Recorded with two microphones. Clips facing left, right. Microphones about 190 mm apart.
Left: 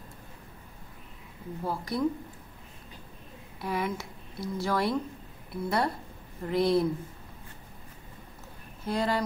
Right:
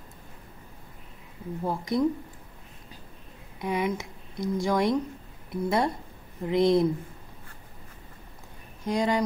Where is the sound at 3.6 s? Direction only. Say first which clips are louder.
Right 4 dB; 20° right (ahead or behind).